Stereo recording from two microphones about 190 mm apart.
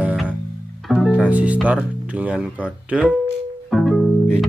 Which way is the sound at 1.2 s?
5° right (ahead or behind).